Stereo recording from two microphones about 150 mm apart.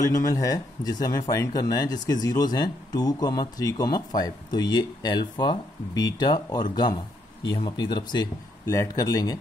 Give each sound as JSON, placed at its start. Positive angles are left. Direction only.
{"t": 0.1, "sound": "speech", "side_deg": 20}